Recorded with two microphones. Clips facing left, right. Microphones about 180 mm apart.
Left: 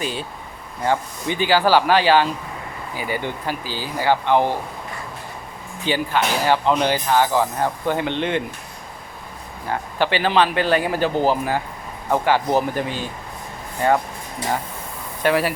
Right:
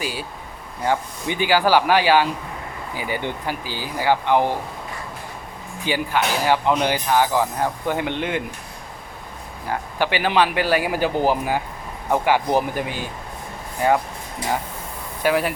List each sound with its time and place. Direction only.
0.0 s speech: 10° right (ahead or behind)
5.8 s speech: 15° right (ahead or behind)
9.6 s speech: 10° right (ahead or behind)
15.2 s speech: centre (ahead or behind)